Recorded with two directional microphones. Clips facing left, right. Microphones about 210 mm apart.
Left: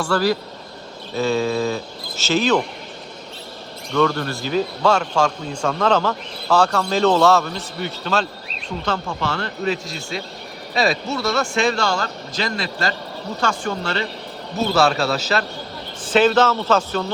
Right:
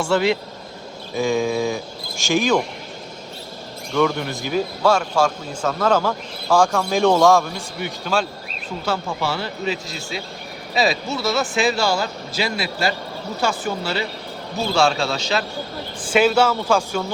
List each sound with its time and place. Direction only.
0.0 s speech: 25° right (ahead or behind)
1.1 s a man's voice: 15° right (ahead or behind)
3.9 s a man's voice: 10° right (ahead or behind)
16.1 s a man's voice: 10° right (ahead or behind)